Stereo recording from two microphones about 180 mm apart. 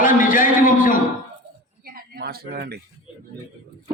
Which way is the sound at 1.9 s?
60° right (ahead or behind).